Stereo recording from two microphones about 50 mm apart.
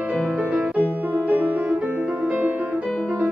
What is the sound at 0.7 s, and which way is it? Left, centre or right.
Piano, right.